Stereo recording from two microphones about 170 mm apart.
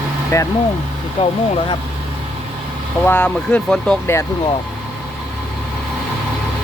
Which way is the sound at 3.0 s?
10° left (ahead or behind).